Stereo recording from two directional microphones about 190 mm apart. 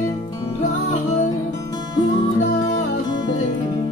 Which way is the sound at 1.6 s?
20° left (ahead or behind).